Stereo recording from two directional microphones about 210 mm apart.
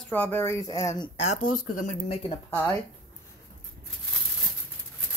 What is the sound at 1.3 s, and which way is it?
Speech, 90° left.